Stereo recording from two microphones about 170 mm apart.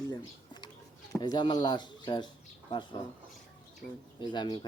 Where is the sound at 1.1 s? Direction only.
25° left (ahead or behind).